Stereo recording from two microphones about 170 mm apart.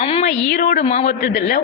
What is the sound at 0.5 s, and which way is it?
Speech, 55° left (ahead or behind).